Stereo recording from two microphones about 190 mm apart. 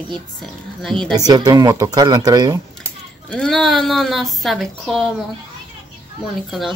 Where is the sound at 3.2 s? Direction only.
5° left (ahead or behind).